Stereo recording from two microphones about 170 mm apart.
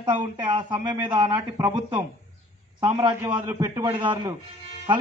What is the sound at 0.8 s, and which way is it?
Speech, 25° right (ahead or behind).